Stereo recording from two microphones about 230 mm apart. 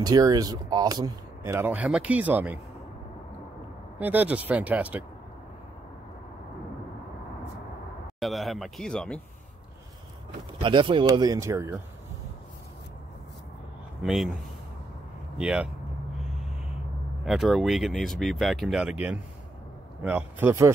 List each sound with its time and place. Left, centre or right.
0.0 s speech: centre
4.0 s speech: centre
8.2 s speech: centre
10.6 s speech: right
14.0 s speech: centre
15.3 s speech: centre
17.2 s speech: centre